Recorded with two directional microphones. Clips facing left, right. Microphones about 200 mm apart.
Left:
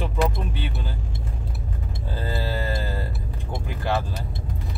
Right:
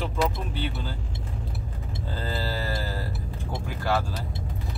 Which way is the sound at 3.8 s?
20° left (ahead or behind).